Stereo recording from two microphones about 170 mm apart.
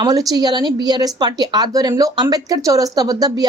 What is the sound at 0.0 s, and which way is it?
Speech, 20° right (ahead or behind).